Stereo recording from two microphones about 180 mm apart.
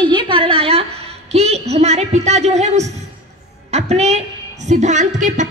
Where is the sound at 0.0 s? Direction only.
25° right (ahead or behind).